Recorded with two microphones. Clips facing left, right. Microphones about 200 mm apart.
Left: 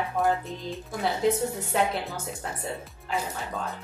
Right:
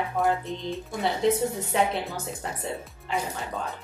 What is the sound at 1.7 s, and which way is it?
Speech, centre (ahead or behind).